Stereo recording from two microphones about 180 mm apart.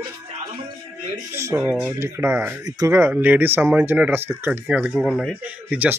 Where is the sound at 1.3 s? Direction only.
15° right (ahead or behind).